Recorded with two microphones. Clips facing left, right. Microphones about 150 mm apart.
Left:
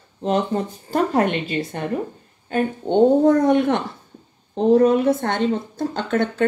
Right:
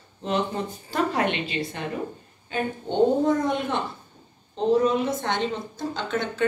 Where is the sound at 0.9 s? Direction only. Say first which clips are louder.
Left 5 dB; 45° left (ahead or behind).